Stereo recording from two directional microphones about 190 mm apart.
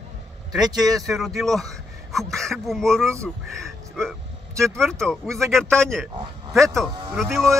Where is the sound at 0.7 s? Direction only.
20° right (ahead or behind).